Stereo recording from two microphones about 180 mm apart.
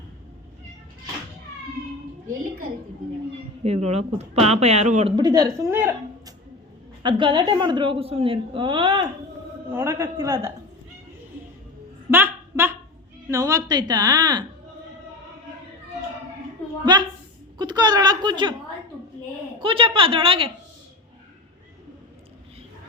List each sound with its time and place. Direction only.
3.6 s speech: 35° right (ahead or behind)
5.1 s a woman's voice: 20° right (ahead or behind)
7.0 s a woman's voice: 25° right (ahead or behind)
9.7 s a man's voice: 15° right (ahead or behind)
12.1 s a sound: 10° right (ahead or behind)
13.3 s a woman's voice: 20° right (ahead or behind)
16.8 s a sound: 25° right (ahead or behind)
17.6 s a woman's voice: 25° right (ahead or behind)
19.5 s a woman's voice: 30° right (ahead or behind)